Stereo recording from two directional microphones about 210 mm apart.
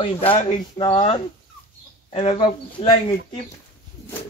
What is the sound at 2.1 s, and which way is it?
Speech, 25° left (ahead or behind).